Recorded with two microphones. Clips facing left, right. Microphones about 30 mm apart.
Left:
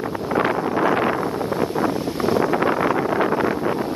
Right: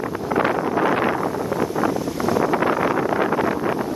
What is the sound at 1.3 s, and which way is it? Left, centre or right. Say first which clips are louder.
Wind noise: even; left.